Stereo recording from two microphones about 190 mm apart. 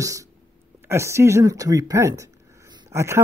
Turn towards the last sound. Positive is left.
turn(degrees=-15)  # may be behind; listen again after turning